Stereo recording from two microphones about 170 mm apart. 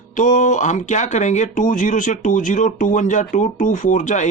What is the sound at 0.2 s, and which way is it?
Speech, 45° left (ahead or behind).